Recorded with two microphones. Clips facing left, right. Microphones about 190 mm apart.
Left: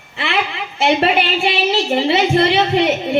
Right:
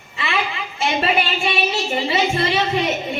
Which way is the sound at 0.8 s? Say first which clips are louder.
Left 5 dB; 65° left (ahead or behind).